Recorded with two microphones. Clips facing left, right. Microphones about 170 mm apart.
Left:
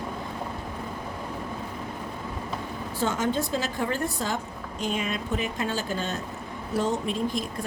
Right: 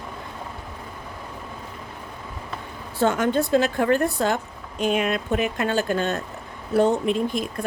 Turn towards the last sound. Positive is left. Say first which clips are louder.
# right 5 dB
turn(degrees=-60)  # may be behind; listen again after turning